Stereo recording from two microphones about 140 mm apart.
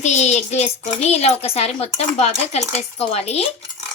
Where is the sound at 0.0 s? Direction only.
55° left (ahead or behind).